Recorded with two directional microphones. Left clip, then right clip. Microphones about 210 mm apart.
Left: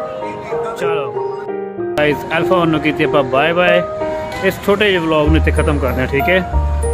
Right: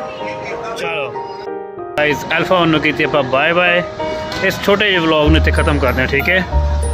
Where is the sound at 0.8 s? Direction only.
20° left (ahead or behind).